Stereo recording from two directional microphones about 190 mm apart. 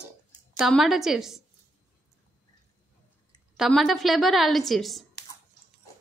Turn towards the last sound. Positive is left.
turn(degrees=0)  # may be behind; listen again after turning